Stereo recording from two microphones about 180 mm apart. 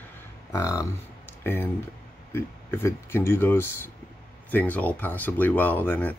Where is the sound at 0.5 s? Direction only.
20° left (ahead or behind).